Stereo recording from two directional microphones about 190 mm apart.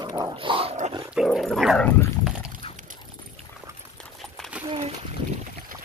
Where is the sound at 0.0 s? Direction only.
20° right (ahead or behind).